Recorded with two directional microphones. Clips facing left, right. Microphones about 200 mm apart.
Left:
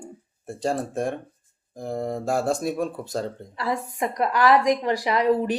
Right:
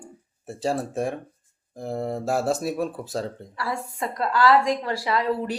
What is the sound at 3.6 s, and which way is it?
A woman's voice, 20° left (ahead or behind).